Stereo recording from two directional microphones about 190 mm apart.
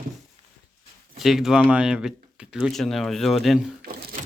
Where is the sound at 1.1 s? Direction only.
Centre (ahead or behind).